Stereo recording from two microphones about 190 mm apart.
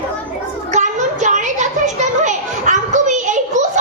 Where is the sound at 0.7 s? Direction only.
40° right (ahead or behind).